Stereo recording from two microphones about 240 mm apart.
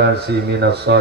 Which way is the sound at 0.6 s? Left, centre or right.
Right.